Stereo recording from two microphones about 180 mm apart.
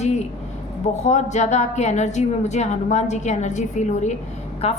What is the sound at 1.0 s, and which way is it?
A woman's voice, 40° left (ahead or behind).